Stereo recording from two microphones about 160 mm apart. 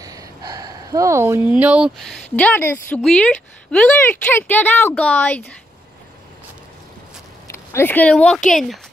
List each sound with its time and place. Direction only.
0.0 s a sound: 20° right (ahead or behind); by 2.2 s centre (ahead or behind)
2.3 s speech: 10° left (ahead or behind)
7.4 s speech: 15° left (ahead or behind)